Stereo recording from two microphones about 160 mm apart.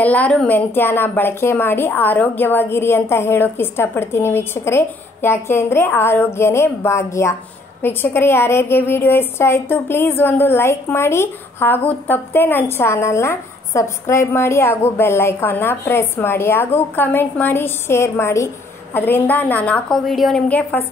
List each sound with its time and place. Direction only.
0.0 s a woman's voice: 10° left (ahead or behind)